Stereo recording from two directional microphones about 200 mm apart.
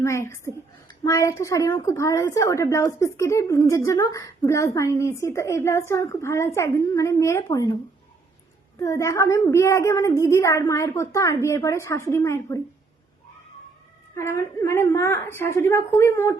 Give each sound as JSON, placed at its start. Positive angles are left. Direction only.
{"t": 0.0, "sound": "a woman's voice", "side_deg": 15}
{"t": 8.8, "sound": "a woman's voice", "side_deg": 15}
{"t": 14.2, "sound": "a woman's voice", "side_deg": 15}